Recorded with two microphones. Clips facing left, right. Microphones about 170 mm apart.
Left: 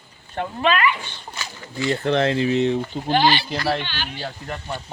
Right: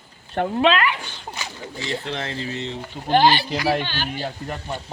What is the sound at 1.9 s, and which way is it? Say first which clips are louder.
Speech: left 9 dB; 60° left (ahead or behind).